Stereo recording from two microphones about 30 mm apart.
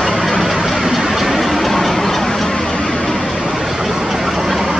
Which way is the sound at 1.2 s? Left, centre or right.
Centre.